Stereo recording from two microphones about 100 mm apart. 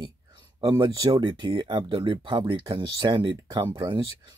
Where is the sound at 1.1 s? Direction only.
50° right (ahead or behind).